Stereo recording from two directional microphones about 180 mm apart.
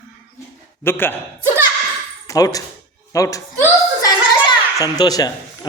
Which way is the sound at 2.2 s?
20° left (ahead or behind).